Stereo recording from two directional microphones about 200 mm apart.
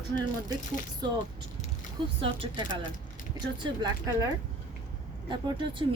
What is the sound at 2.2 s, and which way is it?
Speech, 25° right (ahead or behind).